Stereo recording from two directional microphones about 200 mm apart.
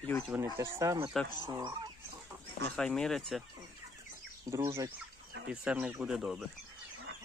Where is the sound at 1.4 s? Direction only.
20° right (ahead or behind).